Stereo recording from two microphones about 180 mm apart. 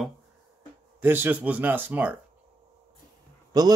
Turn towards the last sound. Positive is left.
turn(degrees=-20)  # may be behind; listen again after turning